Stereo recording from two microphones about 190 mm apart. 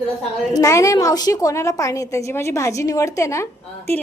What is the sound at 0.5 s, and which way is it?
A woman's voice, 15° left (ahead or behind).